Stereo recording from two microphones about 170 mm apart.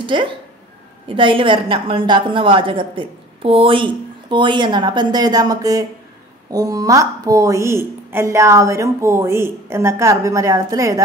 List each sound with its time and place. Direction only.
0.0 s a woman's voice: 30° right (ahead or behind)